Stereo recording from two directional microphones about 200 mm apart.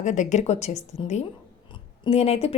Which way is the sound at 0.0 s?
35° left (ahead or behind).